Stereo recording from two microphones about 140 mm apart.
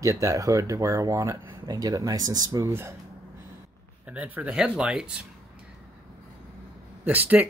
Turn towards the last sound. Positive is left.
turn(degrees=-10)  # may be behind; listen again after turning